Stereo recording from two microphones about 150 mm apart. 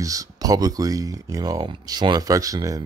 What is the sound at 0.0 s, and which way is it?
Speech, 20° right (ahead or behind).